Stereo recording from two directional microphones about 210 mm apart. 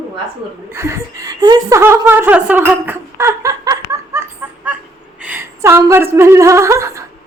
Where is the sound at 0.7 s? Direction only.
15° right (ahead or behind).